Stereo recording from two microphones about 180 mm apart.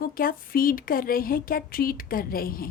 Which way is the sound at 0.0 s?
55° left (ahead or behind).